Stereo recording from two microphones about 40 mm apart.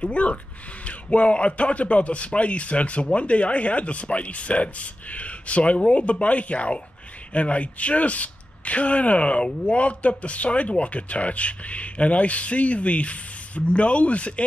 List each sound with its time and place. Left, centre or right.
0.0 s speech: left